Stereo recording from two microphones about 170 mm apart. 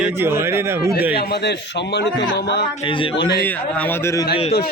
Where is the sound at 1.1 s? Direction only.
75° left (ahead or behind).